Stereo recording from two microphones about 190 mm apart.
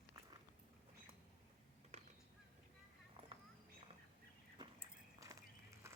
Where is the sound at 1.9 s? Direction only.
35° right (ahead or behind).